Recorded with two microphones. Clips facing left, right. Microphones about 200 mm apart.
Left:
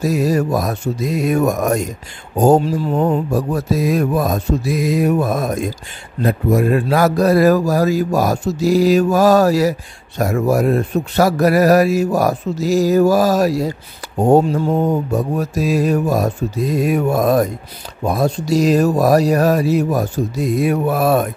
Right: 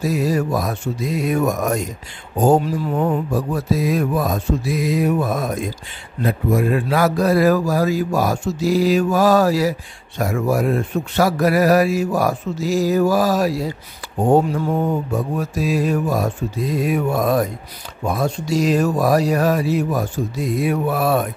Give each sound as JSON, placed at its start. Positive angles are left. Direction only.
{"t": 0.0, "sound": "speech", "side_deg": 45}
{"t": 2.6, "sound": "a sound", "side_deg": 30}
{"t": 3.3, "sound": "speech", "side_deg": 40}
{"t": 14.0, "sound": "mantra", "side_deg": 40}
{"t": 14.5, "sound": "a sound", "side_deg": 25}
{"t": 15.1, "sound": "speech", "side_deg": 40}